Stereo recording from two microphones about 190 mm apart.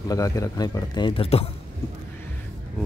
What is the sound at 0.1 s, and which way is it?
A man's voice, 15° left (ahead or behind).